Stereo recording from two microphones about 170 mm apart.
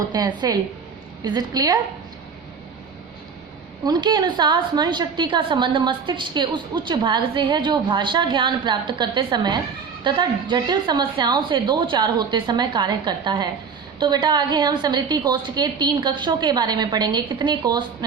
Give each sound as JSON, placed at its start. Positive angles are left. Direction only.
{"t": 0.0, "sound": "a woman's voice", "side_deg": -20}
{"t": 3.8, "sound": "a woman's voice", "side_deg": -25}